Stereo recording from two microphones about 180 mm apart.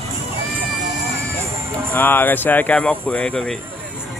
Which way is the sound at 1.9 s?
10° left (ahead or behind).